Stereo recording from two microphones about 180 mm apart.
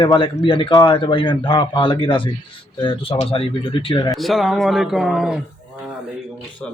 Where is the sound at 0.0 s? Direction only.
25° left (ahead or behind).